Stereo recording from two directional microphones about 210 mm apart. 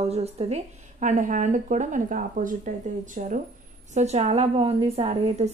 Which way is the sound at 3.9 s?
30° right (ahead or behind).